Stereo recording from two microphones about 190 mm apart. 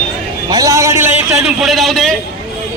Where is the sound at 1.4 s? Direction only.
Centre (ahead or behind).